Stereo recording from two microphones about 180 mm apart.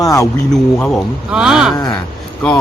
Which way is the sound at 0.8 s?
5° left (ahead or behind).